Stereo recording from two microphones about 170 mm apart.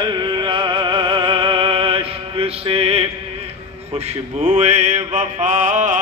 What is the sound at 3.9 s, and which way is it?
Mantra, 40° right (ahead or behind).